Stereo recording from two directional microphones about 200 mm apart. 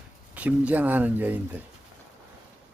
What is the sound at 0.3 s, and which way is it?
Speech, 5° right (ahead or behind).